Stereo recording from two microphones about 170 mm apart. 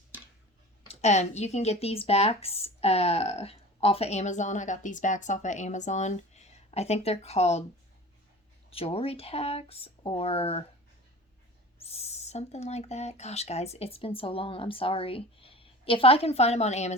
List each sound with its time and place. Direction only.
0.9 s speech: 40° left (ahead or behind)
8.7 s speech: 35° left (ahead or behind)
11.9 s speech: 40° left (ahead or behind)